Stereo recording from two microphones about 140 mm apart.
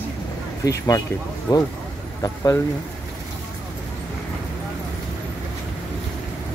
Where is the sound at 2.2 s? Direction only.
25° left (ahead or behind).